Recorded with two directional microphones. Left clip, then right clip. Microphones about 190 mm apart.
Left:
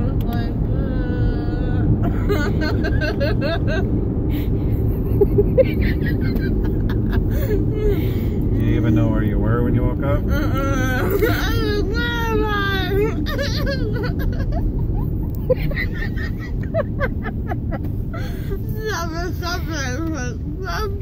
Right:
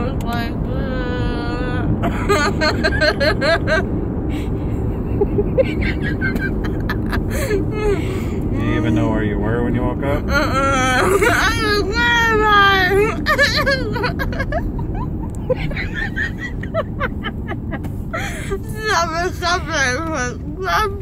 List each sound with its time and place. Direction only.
1.7 s a sound: 20° right (ahead or behind)
2.6 s speech: 20° right (ahead or behind)
5.6 s speech: 10° right (ahead or behind)
8.6 s speech: 15° right (ahead or behind)
18.9 s speech: 20° right (ahead or behind)